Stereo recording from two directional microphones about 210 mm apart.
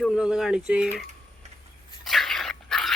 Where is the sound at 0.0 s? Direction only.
5° right (ahead or behind).